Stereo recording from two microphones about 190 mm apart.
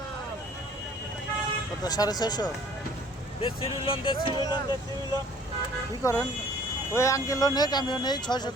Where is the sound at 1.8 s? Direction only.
20° left (ahead or behind).